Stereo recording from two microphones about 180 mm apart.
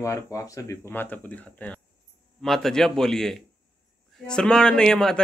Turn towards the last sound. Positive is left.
turn(degrees=5)  # may be behind; listen again after turning